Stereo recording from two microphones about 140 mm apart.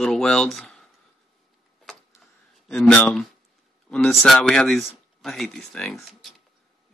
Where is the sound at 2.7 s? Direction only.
5° left (ahead or behind).